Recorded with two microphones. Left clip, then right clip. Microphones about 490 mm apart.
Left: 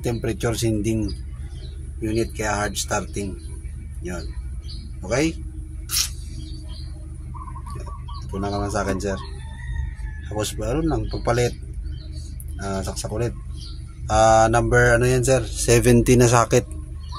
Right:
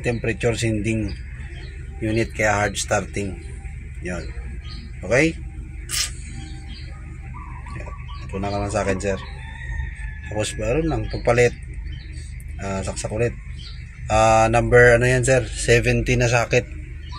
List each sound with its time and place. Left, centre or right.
0.0 s speech: left
2.1 s speech: left
5.0 s speech: left
8.3 s speech: left
10.3 s speech: left
12.5 s speech: left